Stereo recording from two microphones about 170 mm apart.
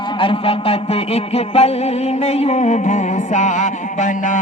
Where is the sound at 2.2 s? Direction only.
40° left (ahead or behind).